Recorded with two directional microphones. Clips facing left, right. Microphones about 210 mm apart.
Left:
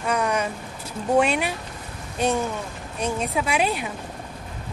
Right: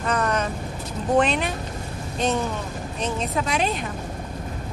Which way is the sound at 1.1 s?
10° left (ahead or behind).